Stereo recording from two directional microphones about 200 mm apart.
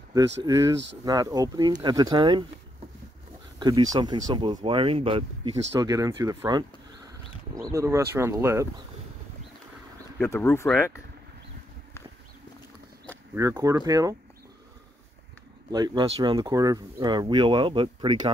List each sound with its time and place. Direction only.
0.4 s speech: 20° right (ahead or behind)
3.5 s speech: 20° right (ahead or behind)
10.1 s speech: 10° left (ahead or behind)
13.3 s speech: 15° right (ahead or behind)
15.7 s speech: 20° right (ahead or behind)